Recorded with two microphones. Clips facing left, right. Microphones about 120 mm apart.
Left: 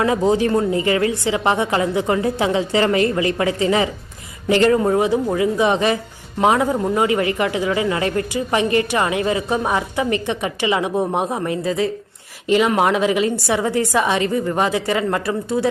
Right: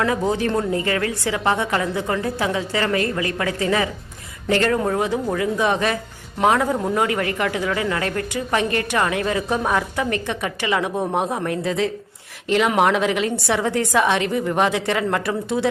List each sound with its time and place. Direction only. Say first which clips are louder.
0.0 s a woman's voice: left 4 dB; 15° left (ahead or behind); by 15.7 s centre (ahead or behind)